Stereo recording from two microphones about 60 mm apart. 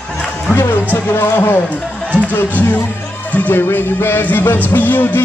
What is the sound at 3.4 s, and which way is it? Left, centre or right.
Music, left.